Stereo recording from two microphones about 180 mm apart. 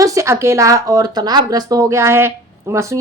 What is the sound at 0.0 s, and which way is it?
Speech, 15° right (ahead or behind).